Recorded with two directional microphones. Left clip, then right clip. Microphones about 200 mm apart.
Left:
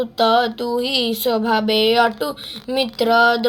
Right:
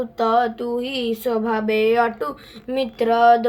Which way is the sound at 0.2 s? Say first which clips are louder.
Left 2 dB; 10° left (ahead or behind).